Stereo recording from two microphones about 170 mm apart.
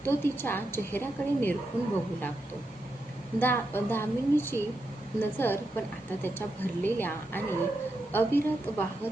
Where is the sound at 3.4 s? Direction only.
10° left (ahead or behind).